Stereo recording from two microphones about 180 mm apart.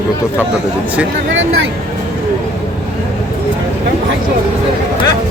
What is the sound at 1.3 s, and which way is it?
Speech, 90° right.